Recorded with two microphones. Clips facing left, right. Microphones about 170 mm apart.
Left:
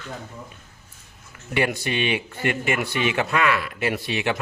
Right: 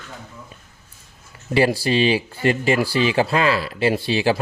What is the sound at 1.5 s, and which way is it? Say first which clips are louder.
Speech: right 6 dB; 30° right (ahead or behind).